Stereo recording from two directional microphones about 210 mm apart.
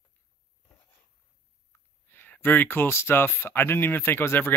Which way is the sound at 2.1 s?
10° left (ahead or behind).